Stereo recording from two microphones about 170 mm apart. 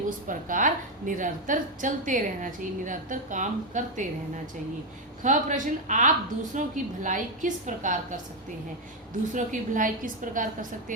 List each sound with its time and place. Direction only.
0.3 s a woman's voice: 50° right (ahead or behind)
5.2 s a woman's voice: 50° right (ahead or behind)
9.3 s a woman's voice: 50° right (ahead or behind)